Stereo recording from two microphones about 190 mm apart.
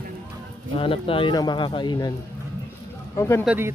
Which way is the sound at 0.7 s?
30° left (ahead or behind).